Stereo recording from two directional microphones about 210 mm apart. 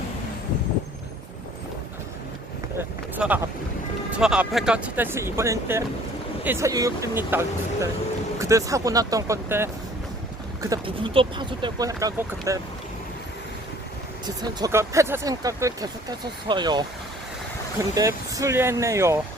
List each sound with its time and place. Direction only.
2.7 s boat: 10° right (ahead or behind)
4.1 s speech: 5° right (ahead or behind)
14.3 s speech: 20° right (ahead or behind)